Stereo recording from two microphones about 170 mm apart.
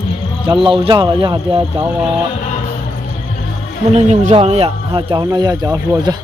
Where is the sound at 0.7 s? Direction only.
25° right (ahead or behind).